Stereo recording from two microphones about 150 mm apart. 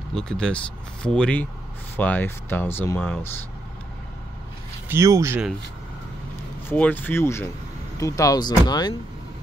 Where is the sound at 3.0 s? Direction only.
5° left (ahead or behind).